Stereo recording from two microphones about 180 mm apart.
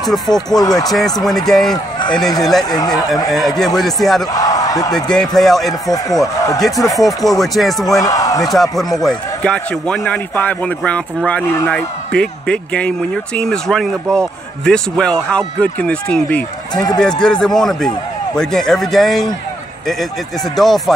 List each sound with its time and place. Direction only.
0.0 s speech: centre (ahead or behind)
0.6 s speech: 20° left (ahead or behind)
1.2 s speech: centre (ahead or behind)
3.3 s speech: centre (ahead or behind)
4.3 s speech: 20° left (ahead or behind)
4.9 s speech: 5° left (ahead or behind)
5.9 s speech: 20° left (ahead or behind)
7.0 s speech: centre (ahead or behind)
8.0 s speech: 20° left (ahead or behind)
9.0 s a man's voice: 5° left (ahead or behind)
16.7 s speech: 20° left (ahead or behind)
17.2 s speech: 5° left (ahead or behind)
20.5 s speech: centre (ahead or behind)